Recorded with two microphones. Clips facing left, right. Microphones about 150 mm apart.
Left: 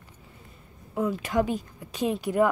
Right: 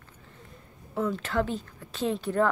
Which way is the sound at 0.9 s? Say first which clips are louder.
Left 2 dB; 10° left (ahead or behind).